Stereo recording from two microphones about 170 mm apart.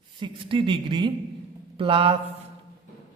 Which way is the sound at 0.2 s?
30° right (ahead or behind).